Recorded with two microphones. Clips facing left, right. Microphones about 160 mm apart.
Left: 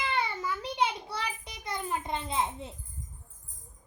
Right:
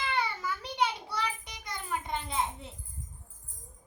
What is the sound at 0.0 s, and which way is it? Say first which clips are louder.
Child singing: left 1 dB; 20° left (ahead or behind).